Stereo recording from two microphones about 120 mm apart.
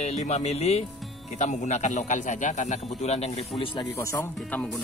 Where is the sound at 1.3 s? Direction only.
75° left (ahead or behind); by 3.4 s 60° left (ahead or behind).